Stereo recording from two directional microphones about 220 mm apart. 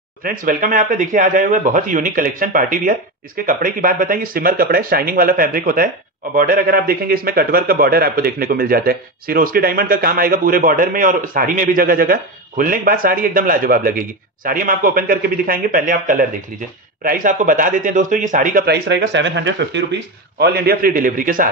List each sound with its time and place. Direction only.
0.2 s a man's voice: 40° right (ahead or behind)